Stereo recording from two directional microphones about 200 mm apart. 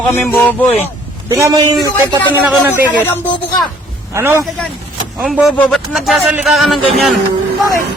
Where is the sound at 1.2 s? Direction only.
15° right (ahead or behind).